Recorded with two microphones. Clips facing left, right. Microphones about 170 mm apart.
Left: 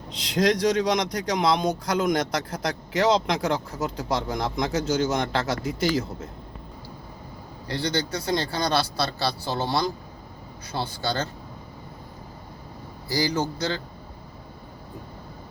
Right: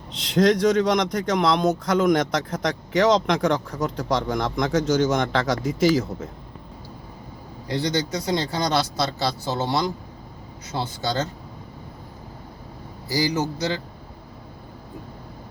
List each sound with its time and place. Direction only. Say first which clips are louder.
0.8 s a man's voice: right 3 dB; centre (ahead or behind)
7.7 s speech: right 3 dB; 20° right (ahead or behind)
13.1 s a man's voice: right 2 dB; 15° right (ahead or behind)